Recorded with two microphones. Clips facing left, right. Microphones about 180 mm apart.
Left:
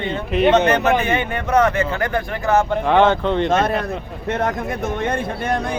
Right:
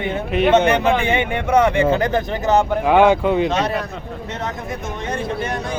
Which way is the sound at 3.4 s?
50° left (ahead or behind).